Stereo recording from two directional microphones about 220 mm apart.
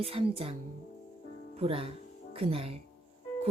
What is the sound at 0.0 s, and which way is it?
Speech, 25° right (ahead or behind).